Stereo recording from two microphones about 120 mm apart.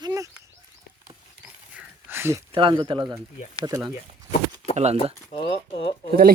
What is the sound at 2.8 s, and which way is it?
Speech, 40° right (ahead or behind).